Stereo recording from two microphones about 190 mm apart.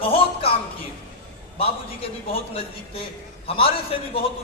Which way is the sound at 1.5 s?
30° left (ahead or behind).